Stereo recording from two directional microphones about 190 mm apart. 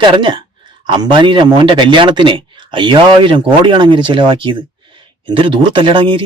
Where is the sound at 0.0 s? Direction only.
25° right (ahead or behind).